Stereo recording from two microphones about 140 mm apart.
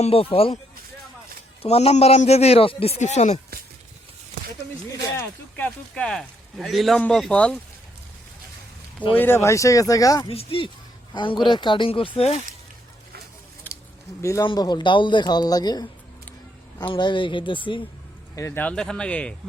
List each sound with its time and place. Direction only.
0.0 s a man's voice: 40° left (ahead or behind)
1.6 s a man's voice: 50° left (ahead or behind)
5.1 s speech: 10° left (ahead or behind)
9.1 s speech: 15° left (ahead or behind)
10.2 s a man's voice: 40° left (ahead or behind)
14.2 s speech: 20° left (ahead or behind)
16.9 s speech: 35° left (ahead or behind)
18.3 s speech: 20° left (ahead or behind)
18.6 s speech: 5° left (ahead or behind)